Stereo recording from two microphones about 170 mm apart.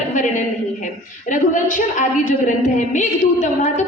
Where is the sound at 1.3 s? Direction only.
50° left (ahead or behind).